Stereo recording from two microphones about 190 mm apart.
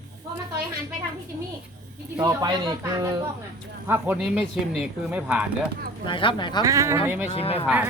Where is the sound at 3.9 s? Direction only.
5° right (ahead or behind).